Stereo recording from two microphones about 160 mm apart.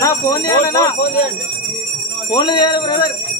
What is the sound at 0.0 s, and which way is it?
Speech, 20° left (ahead or behind).